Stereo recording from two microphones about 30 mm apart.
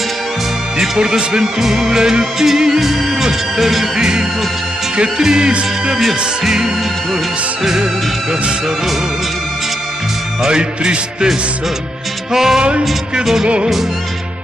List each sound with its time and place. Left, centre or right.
0.7 s speech: right
1.4 s music: centre
2.8 s music: centre
3.9 s music: right
5.9 s music: centre
10.4 s music: right
12.3 s music: centre